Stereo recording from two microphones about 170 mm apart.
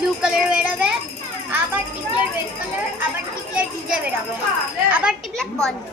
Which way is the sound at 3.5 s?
5° right (ahead or behind).